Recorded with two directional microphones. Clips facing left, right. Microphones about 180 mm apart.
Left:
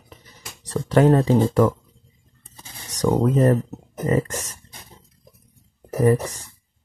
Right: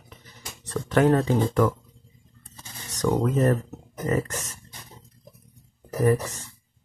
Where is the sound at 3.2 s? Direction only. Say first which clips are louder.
Left 5 dB; 30° left (ahead or behind).